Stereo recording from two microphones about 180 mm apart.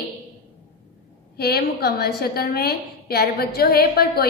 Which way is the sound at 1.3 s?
60° left (ahead or behind).